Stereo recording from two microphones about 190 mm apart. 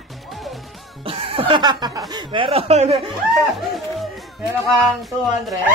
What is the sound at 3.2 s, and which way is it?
Music, centre (ahead or behind).